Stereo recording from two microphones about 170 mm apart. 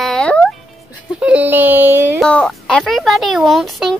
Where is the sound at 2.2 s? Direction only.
5° left (ahead or behind).